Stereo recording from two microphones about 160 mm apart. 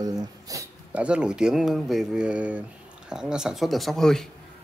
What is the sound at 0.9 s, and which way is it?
Speech, 5° right (ahead or behind).